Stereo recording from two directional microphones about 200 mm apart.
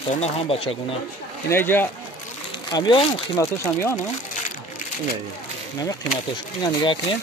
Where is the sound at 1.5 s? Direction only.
10° left (ahead or behind).